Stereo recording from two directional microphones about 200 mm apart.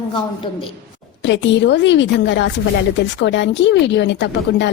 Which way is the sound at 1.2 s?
65° left (ahead or behind).